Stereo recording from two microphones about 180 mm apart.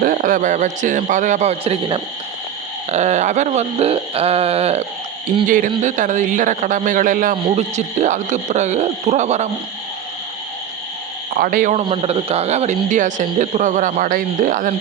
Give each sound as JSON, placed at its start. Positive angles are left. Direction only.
{"t": 0.0, "sound": "speech", "side_deg": -50}
{"t": 5.5, "sound": "speech", "side_deg": -45}
{"t": 11.3, "sound": "speech", "side_deg": -50}